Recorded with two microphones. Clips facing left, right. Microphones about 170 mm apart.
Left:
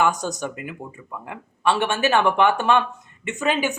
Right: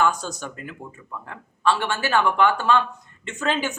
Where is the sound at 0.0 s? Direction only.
15° left (ahead or behind).